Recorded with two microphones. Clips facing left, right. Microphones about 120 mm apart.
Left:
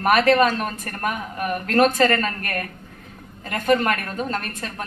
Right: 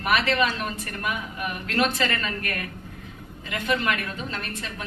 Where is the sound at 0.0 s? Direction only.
45° left (ahead or behind).